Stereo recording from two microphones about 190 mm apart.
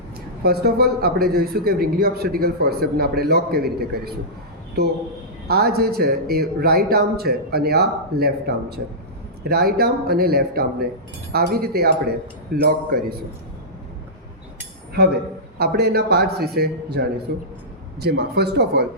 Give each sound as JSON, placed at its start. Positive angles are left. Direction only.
{"t": 0.4, "sound": "a man's voice", "side_deg": -55}
{"t": 15.5, "sound": "a man's voice", "side_deg": -55}